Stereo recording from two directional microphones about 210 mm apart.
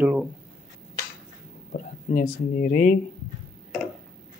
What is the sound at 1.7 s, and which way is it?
Speech, 40° left (ahead or behind).